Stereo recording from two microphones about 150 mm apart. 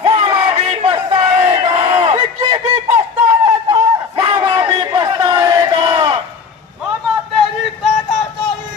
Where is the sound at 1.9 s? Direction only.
45° right (ahead or behind).